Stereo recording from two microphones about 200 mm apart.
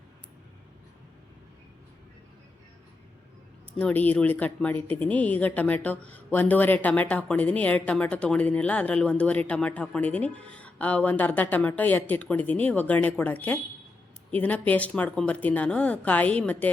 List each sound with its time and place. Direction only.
3.8 s speech: 5° left (ahead or behind)